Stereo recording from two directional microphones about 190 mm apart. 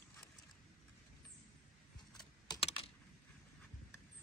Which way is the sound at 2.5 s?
30° left (ahead or behind).